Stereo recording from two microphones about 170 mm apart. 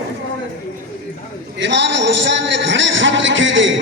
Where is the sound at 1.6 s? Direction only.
90° right.